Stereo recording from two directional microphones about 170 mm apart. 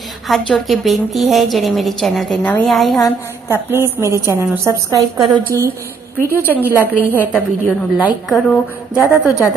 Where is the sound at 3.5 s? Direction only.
15° right (ahead or behind).